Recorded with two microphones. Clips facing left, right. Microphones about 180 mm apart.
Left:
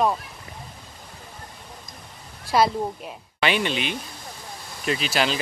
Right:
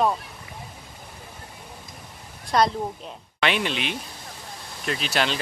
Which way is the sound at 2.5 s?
5° left (ahead or behind).